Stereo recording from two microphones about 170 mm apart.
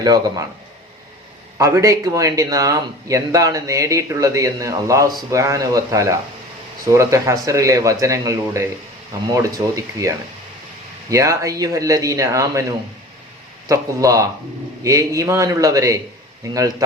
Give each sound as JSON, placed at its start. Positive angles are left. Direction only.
{"t": 0.0, "sound": "speech", "side_deg": -20}
{"t": 1.5, "sound": "speech", "side_deg": -20}
{"t": 13.7, "sound": "speech", "side_deg": -20}